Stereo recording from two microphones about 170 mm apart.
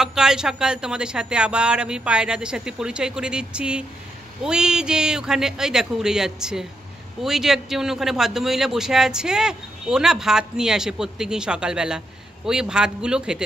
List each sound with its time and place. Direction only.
0.0 s a man's voice: 5° right (ahead or behind)